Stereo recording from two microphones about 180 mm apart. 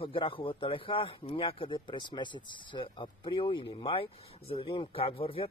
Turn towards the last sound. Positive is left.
turn(degrees=30)  # may be behind; listen again after turning